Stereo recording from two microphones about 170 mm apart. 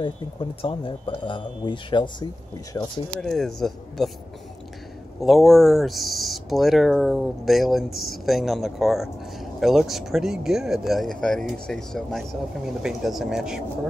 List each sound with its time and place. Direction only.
0.0 s speech: 30° left (ahead or behind)
3.2 s speech: centre (ahead or behind)
5.2 s speech: centre (ahead or behind)